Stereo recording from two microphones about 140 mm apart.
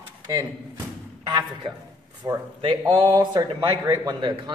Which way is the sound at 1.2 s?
30° right (ahead or behind).